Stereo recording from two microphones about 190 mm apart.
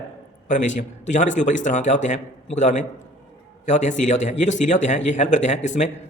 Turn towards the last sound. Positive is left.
turn(degrees=40)  # may be behind; listen again after turning